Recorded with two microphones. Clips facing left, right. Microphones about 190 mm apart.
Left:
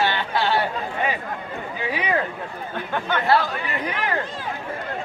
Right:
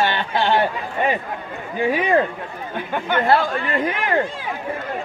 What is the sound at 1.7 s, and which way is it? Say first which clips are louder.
Speech: right 7 dB; 45° right (ahead or behind).